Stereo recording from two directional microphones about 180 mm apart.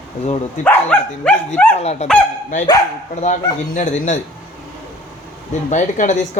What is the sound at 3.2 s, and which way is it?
Speech, 40° left (ahead or behind).